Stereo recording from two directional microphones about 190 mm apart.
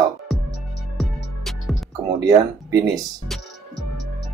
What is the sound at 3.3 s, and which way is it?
Music, centre (ahead or behind).